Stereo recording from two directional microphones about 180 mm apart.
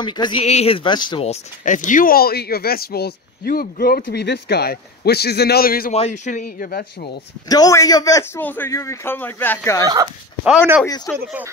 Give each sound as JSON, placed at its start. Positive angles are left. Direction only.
{"t": 0.0, "sound": "speech", "side_deg": 25}
{"t": 1.2, "sound": "speech", "side_deg": 40}
{"t": 5.9, "sound": "speech", "side_deg": 40}
{"t": 7.4, "sound": "a man's voice", "side_deg": 20}
{"t": 10.4, "sound": "speech", "side_deg": -5}
{"t": 11.1, "sound": "a man's voice", "side_deg": 10}